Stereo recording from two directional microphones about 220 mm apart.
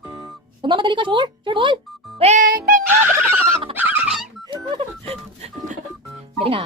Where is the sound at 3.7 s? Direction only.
10° right (ahead or behind).